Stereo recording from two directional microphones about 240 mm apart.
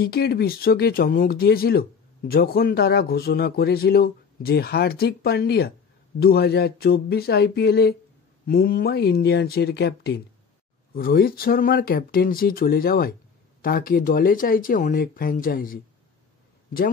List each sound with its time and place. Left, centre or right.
0.0 s speech: left